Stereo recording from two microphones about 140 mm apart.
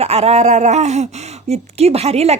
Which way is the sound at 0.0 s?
50° right (ahead or behind).